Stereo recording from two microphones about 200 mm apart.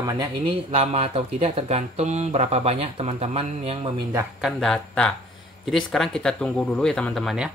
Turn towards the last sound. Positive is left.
turn(degrees=0)  # may be behind; listen again after turning